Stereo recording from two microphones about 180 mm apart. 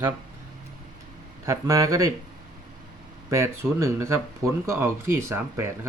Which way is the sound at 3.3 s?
15° right (ahead or behind).